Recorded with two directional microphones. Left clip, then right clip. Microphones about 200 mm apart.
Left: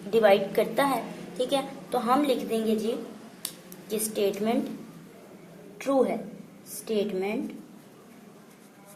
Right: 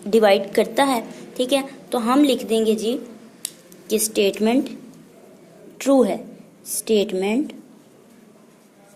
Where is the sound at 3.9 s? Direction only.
45° right (ahead or behind).